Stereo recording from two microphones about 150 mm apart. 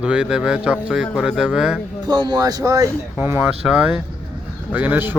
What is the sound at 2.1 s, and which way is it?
Speech, 30° right (ahead or behind).